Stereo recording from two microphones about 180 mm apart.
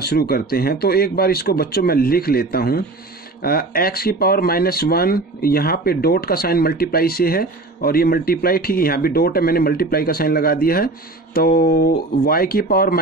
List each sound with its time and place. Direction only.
0.0 s speech: 60° left (ahead or behind)